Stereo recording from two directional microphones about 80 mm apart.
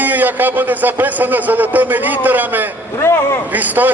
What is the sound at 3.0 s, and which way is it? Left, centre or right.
Speech, left.